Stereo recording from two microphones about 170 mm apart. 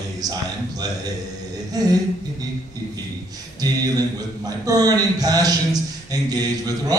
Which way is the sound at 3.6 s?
20° right (ahead or behind).